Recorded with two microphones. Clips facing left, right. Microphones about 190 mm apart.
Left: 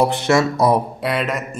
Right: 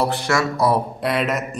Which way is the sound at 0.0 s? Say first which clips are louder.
Left 4 dB; 20° left (ahead or behind).